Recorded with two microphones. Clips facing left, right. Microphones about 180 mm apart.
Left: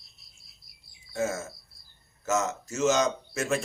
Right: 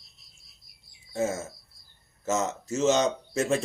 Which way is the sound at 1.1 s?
25° right (ahead or behind).